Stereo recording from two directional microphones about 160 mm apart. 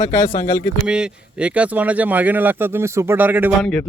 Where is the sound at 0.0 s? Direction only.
25° left (ahead or behind).